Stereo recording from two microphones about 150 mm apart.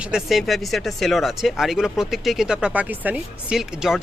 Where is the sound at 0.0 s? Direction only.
5° right (ahead or behind).